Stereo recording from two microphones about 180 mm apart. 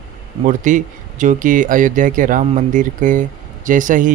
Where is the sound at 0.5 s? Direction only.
45° right (ahead or behind).